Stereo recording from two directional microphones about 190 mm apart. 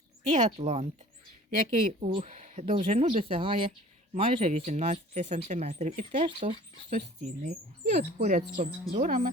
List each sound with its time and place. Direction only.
0.3 s speech: 40° right (ahead or behind)
7.4 s speech: 40° right (ahead or behind)